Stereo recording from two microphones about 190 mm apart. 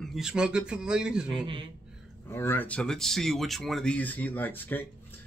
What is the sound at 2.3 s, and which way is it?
Speech, 15° left (ahead or behind).